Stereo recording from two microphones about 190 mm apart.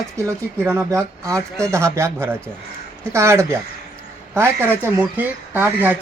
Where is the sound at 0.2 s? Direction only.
15° right (ahead or behind).